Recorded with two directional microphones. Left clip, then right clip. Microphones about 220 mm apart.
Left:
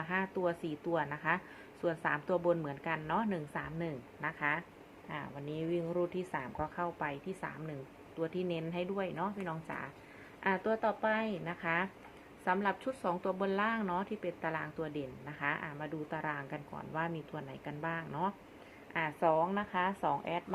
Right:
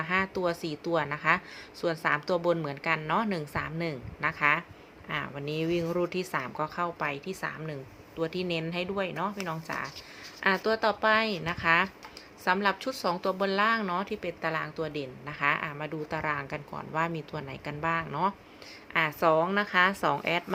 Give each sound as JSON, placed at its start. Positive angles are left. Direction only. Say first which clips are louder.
{"t": 0.0, "sound": "a woman's voice", "louder": "right 6 dB", "side_deg": -25}